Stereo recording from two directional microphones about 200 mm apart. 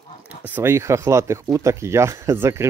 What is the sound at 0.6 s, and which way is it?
Speech, 15° right (ahead or behind).